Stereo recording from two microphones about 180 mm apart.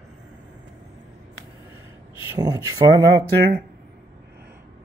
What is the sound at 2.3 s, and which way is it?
Speech, 20° right (ahead or behind).